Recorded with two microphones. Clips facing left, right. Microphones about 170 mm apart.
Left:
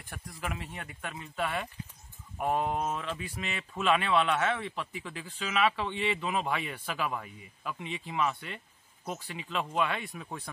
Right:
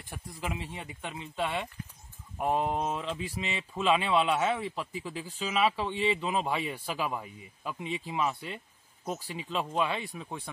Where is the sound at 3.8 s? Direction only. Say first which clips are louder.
Right 1 dB; 10° right (ahead or behind).